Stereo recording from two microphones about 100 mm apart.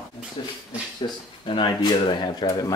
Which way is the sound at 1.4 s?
55° left (ahead or behind).